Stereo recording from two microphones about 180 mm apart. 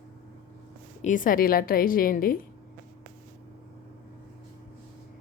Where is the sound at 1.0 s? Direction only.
45° left (ahead or behind).